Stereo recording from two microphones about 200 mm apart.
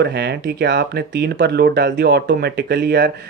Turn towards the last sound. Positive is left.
turn(degrees=-50)  # may be behind; listen again after turning